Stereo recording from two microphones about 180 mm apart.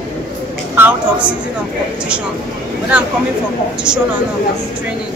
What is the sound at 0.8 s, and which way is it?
Speech, 5° right (ahead or behind).